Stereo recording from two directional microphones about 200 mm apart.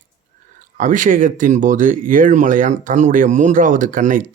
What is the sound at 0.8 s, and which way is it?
Speech, 40° right (ahead or behind).